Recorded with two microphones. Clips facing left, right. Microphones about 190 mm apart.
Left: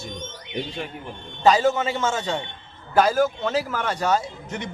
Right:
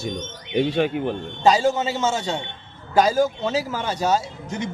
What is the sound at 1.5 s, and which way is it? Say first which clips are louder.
A man's voice: even; 10° right (ahead or behind).